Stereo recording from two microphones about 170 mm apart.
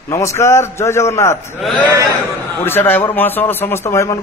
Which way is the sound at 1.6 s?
Centre (ahead or behind).